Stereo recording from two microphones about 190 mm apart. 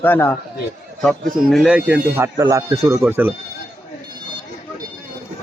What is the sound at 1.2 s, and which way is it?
Speech, 45° right (ahead or behind).